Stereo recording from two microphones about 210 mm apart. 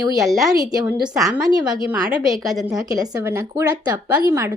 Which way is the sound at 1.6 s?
5° right (ahead or behind).